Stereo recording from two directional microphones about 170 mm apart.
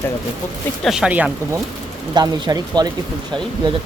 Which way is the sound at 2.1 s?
25° right (ahead or behind).